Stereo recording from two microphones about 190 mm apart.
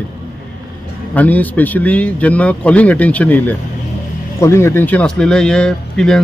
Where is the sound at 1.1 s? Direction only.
10° left (ahead or behind).